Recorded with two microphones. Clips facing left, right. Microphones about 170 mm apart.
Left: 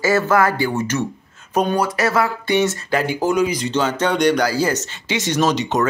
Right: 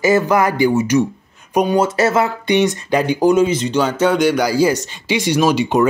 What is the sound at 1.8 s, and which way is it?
Speech, 25° right (ahead or behind).